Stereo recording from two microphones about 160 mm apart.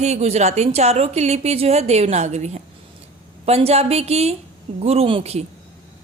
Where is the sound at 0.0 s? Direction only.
45° right (ahead or behind).